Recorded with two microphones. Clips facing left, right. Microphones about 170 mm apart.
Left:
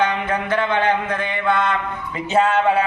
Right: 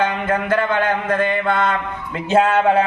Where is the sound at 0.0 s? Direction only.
50° right (ahead or behind).